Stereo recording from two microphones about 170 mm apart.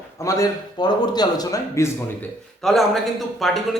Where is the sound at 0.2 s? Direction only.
20° left (ahead or behind).